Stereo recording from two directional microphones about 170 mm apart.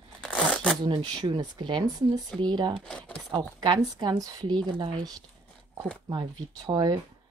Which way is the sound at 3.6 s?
25° right (ahead or behind).